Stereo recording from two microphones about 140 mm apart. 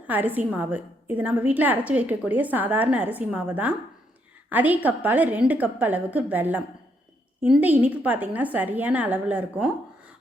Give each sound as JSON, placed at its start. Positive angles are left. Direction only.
{"t": 0.1, "sound": "a woman's voice", "side_deg": -15}